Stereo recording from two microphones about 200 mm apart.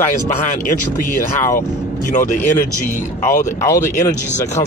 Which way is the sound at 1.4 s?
40° left (ahead or behind).